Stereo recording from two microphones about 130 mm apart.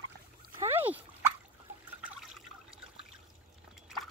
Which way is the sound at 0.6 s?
15° right (ahead or behind).